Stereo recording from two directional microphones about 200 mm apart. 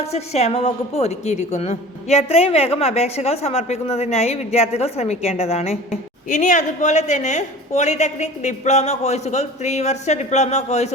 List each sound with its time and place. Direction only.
0.0 s a woman's voice: 30° left (ahead or behind)